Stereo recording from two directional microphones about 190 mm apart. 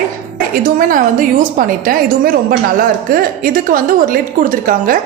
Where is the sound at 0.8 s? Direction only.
45° right (ahead or behind).